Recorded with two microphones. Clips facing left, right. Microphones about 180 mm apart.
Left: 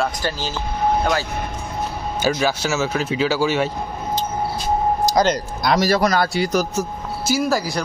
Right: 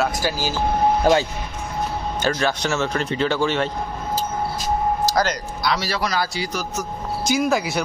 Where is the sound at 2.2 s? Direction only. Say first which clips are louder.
Left 2 dB; 5° left (ahead or behind).